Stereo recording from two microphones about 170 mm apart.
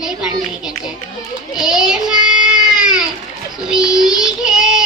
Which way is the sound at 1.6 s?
5° right (ahead or behind).